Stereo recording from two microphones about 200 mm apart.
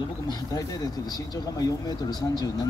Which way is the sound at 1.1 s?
20° left (ahead or behind).